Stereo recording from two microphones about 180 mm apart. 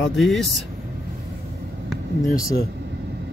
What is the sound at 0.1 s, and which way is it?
Speech, centre (ahead or behind).